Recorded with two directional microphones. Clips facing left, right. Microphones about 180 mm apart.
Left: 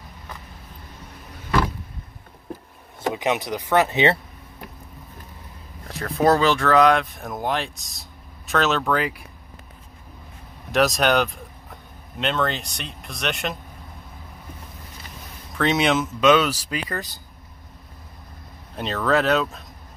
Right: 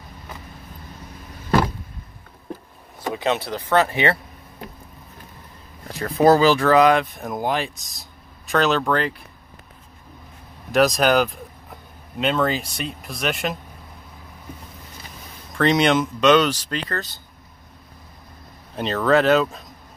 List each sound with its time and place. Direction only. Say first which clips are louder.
3.1 s speech: even; 15° left (ahead or behind)
5.9 s speech: right 3 dB; centre (ahead or behind)
10.7 s speech: right 2 dB; centre (ahead or behind)
15.5 s speech: right 3 dB; 5° left (ahead or behind)
18.8 s speech: right 3 dB; centre (ahead or behind)